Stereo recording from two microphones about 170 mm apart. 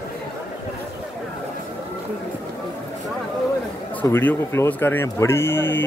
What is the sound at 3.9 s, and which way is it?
Speech, 10° left (ahead or behind).